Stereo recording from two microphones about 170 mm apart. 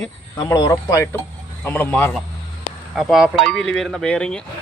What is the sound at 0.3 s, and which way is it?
Speech, 20° left (ahead or behind).